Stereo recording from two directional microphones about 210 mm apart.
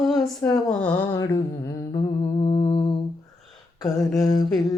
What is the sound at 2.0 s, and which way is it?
Humming, 30° left (ahead or behind).